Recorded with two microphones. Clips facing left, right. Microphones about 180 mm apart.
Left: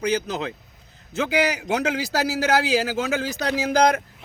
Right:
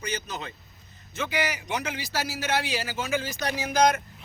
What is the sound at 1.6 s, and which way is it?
Speech, 75° left (ahead or behind).